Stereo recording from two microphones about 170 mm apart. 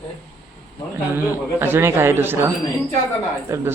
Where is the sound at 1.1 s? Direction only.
15° right (ahead or behind).